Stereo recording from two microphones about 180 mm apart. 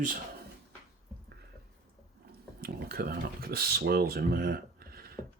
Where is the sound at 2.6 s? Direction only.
60° right (ahead or behind).